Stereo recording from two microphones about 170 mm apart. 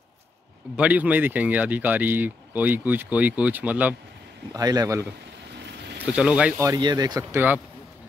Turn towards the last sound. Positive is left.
turn(degrees=-10)  # may be behind; listen again after turning